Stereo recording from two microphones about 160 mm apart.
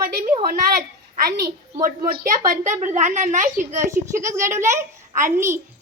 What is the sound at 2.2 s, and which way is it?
A child's voice, 55° right (ahead or behind).